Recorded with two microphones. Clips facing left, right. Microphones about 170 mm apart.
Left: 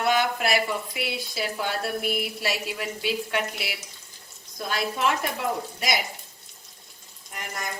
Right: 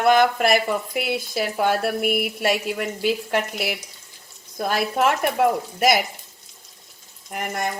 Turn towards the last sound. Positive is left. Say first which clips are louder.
# right 8 dB
turn(degrees=-60)  # may be behind; listen again after turning